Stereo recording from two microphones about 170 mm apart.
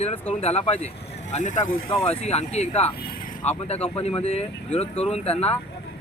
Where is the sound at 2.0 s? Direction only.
35° left (ahead or behind).